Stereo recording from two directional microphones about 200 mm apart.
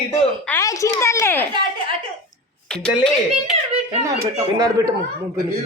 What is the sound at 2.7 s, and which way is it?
Speech, 5° left (ahead or behind).